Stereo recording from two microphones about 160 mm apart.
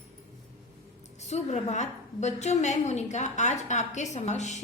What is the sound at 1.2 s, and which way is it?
A woman's voice, 45° left (ahead or behind).